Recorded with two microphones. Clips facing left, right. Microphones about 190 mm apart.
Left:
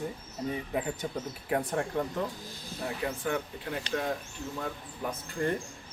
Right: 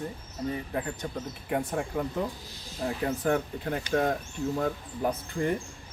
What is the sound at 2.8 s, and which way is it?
Speech, 40° right (ahead or behind).